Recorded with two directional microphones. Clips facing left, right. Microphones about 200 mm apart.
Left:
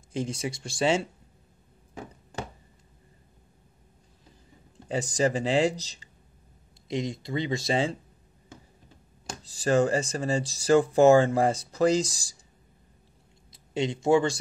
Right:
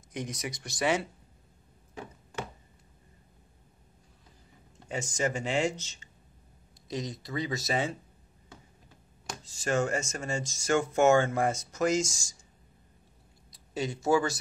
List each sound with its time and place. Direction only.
0.1 s speech: 30° left (ahead or behind)
4.8 s speech: 35° left (ahead or behind)
6.9 s speech: 25° left (ahead or behind)
9.4 s speech: 35° left (ahead or behind)
13.5 s a sound: 25° left (ahead or behind)
14.0 s speech: 25° left (ahead or behind)